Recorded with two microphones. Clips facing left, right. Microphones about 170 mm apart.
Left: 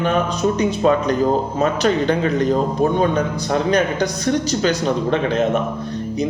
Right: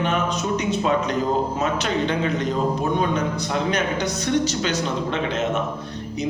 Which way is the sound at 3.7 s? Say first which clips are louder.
Left 5 dB; 35° left (ahead or behind).